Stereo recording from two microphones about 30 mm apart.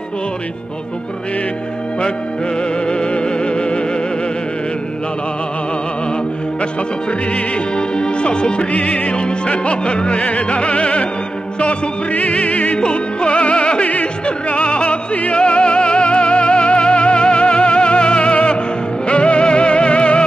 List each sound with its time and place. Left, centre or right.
2.9 s music: left
6.6 s music: left
11.6 s music: left
12.7 s music: left